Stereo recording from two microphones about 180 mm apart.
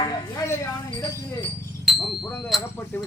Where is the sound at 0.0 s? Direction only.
15° left (ahead or behind).